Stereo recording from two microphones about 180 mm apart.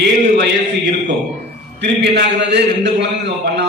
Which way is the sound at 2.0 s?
70° right (ahead or behind).